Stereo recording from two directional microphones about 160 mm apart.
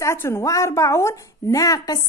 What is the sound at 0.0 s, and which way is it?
A woman's voice, 15° left (ahead or behind).